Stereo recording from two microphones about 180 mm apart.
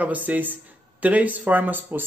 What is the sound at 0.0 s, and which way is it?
Speech, 10° right (ahead or behind).